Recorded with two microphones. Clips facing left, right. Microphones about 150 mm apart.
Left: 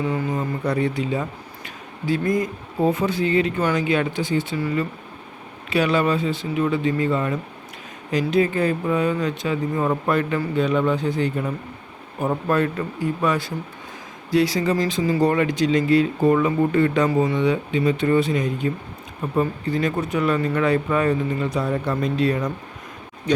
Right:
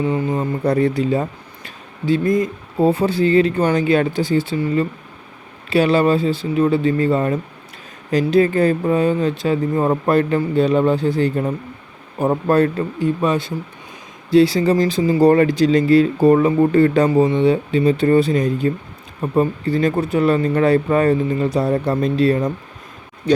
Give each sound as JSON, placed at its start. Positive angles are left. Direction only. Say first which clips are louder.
{"t": 0.0, "sound": "speech", "louder": "right 4 dB", "side_deg": -30}
{"t": 2.0, "sound": "speech", "louder": "right 5 dB", "side_deg": -25}
{"t": 5.7, "sound": "speech", "louder": "right 5 dB", "side_deg": -30}
{"t": 13.0, "sound": "speech", "louder": "right 4 dB", "side_deg": -25}
{"t": 23.3, "sound": "a sound", "louder": "right 5 dB", "side_deg": -30}